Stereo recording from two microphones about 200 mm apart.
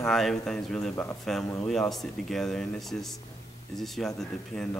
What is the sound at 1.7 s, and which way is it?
Speech, centre (ahead or behind).